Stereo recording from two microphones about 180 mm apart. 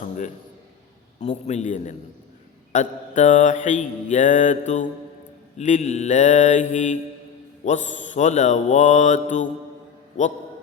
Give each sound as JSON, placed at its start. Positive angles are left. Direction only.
{"t": 1.2, "sound": "mantra", "side_deg": 40}